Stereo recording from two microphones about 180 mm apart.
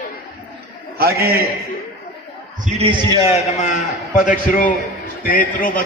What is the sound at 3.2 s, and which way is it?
A man's voice, 35° left (ahead or behind).